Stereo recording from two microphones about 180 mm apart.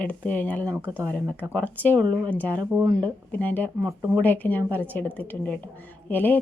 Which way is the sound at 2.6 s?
20° right (ahead or behind).